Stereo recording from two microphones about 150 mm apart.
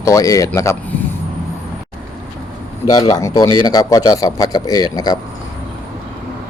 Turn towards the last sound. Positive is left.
turn(degrees=25)  # may be behind; listen again after turning